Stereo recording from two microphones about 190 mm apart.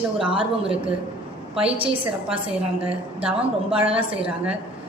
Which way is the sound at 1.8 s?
30° right (ahead or behind).